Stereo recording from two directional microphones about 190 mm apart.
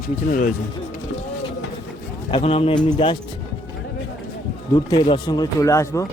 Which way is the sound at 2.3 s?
30° left (ahead or behind).